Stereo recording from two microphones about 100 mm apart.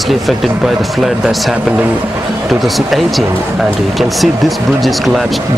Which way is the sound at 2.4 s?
Centre (ahead or behind).